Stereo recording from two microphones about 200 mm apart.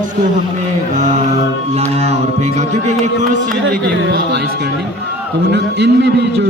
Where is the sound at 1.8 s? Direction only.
30° right (ahead or behind).